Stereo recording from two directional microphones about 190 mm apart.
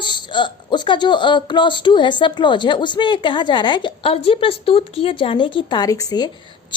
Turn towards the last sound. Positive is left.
turn(degrees=20)  # may be behind; listen again after turning